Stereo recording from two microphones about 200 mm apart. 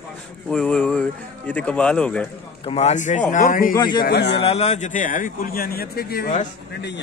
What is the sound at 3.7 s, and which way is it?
Speech, 20° left (ahead or behind).